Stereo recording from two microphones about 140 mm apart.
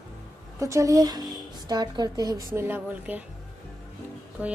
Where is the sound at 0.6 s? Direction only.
25° right (ahead or behind).